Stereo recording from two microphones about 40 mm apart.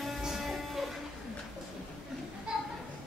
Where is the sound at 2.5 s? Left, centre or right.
Right.